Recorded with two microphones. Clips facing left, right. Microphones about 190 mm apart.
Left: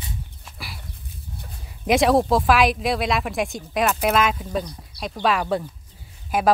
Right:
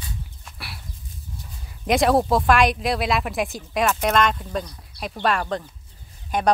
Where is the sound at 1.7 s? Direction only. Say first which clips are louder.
Left 1 dB; centre (ahead or behind).